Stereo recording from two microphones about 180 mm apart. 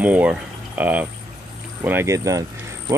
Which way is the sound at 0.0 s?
10° right (ahead or behind).